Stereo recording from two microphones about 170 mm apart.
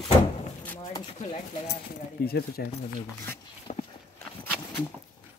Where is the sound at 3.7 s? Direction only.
45° left (ahead or behind).